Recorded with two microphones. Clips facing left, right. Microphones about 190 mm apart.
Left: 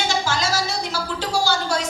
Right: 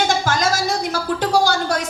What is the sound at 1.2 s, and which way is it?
Speech, 55° right (ahead or behind).